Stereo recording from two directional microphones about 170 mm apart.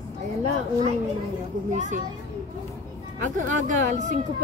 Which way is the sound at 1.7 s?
45° right (ahead or behind).